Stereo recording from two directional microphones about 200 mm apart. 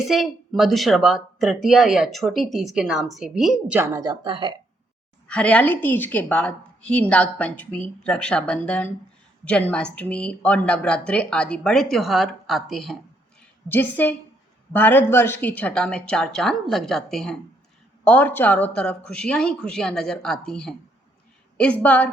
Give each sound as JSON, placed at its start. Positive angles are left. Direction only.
{"t": 0.1, "sound": "speech", "side_deg": 0}
{"t": 5.3, "sound": "a woman's voice", "side_deg": 5}